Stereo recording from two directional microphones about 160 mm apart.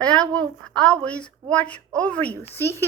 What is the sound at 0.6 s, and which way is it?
A woman's voice, 5° left (ahead or behind).